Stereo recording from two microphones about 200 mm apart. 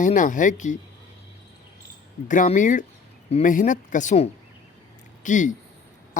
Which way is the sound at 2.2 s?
40° left (ahead or behind).